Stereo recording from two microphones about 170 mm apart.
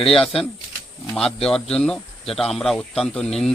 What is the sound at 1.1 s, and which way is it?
Speech, centre (ahead or behind).